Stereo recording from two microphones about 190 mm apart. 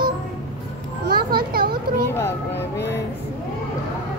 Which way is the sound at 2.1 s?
10° left (ahead or behind).